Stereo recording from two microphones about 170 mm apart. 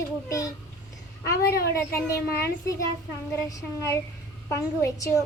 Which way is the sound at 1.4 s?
65° left (ahead or behind).